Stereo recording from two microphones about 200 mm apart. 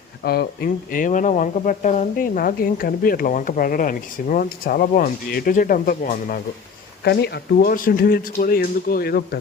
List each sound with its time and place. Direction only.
0.3 s speech: 50° left (ahead or behind)
7.0 s speech: 55° left (ahead or behind)